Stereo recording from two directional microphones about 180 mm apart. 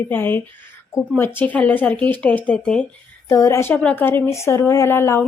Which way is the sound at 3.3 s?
15° left (ahead or behind).